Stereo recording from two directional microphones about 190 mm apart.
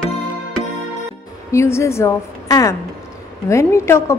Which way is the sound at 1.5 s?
15° left (ahead or behind).